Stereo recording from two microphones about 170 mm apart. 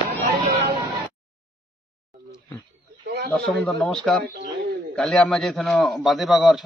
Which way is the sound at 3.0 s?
70° right (ahead or behind).